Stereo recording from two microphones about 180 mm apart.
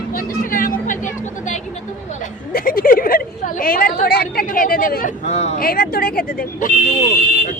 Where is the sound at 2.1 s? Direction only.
50° left (ahead or behind).